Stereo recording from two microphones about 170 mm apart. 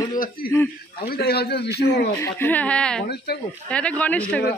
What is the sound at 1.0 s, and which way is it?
A man's voice, 65° left (ahead or behind).